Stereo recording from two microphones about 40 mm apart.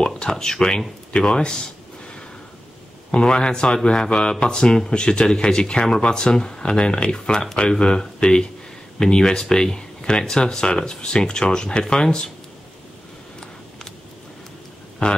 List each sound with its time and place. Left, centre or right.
0.0 s speech: centre
3.1 s speech: centre